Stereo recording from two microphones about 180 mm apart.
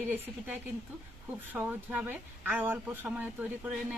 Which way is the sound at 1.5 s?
10° right (ahead or behind).